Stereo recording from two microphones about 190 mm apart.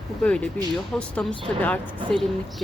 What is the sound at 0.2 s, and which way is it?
A woman's voice, 5° left (ahead or behind).